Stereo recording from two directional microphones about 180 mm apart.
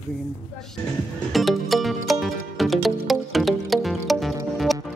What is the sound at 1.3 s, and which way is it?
Music, centre (ahead or behind).